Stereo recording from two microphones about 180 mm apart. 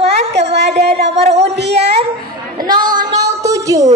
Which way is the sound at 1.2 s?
40° right (ahead or behind).